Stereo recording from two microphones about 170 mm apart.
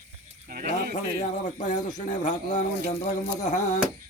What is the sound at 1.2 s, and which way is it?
Speech, 45° left (ahead or behind).